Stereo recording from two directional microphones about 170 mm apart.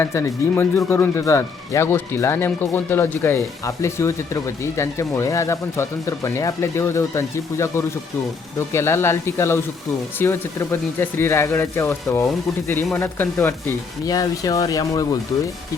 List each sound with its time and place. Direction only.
0.0 s speech: 15° left (ahead or behind)